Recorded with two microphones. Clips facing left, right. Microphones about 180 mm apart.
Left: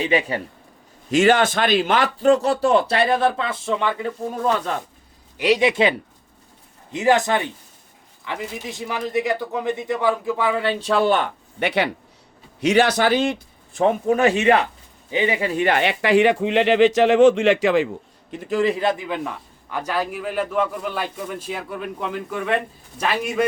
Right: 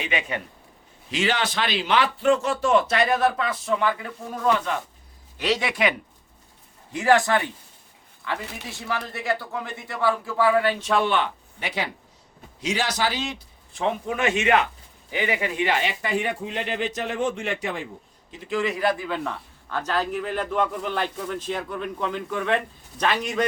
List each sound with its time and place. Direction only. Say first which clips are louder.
0.0 s speech: left 7 dB; 35° left (ahead or behind)
1.1 s speech: left 9 dB; 50° left (ahead or behind); by 5.9 s 20° left (ahead or behind)
6.9 s speech: left 2 dB; 20° left (ahead or behind); by 11.3 s 40° left (ahead or behind)
11.6 s speech: left 8 dB; 65° left (ahead or behind); by 15.6 s 35° left (ahead or behind)
15.6 s speech: left 7 dB; 60° left (ahead or behind); by 17.8 s 90° left
18.3 s a man's voice: left 8 dB; 55° left (ahead or behind)
18.5 s a man's voice: left 4 dB; 30° left (ahead or behind); by 23.5 s 5° left (ahead or behind)